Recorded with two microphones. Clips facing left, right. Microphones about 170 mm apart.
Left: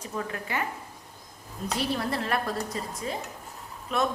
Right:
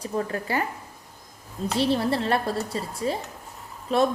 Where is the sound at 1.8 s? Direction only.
30° right (ahead or behind).